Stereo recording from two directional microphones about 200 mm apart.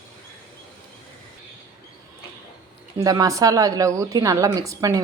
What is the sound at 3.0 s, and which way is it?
A woman's voice, 20° right (ahead or behind).